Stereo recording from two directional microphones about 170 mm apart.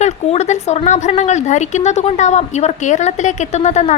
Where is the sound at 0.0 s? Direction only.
40° left (ahead or behind).